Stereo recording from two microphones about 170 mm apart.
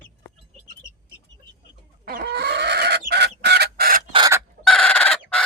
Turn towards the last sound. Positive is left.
turn(degrees=5)  # may be behind; listen again after turning